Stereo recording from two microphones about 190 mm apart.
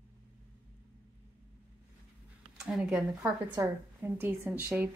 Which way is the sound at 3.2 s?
15° right (ahead or behind).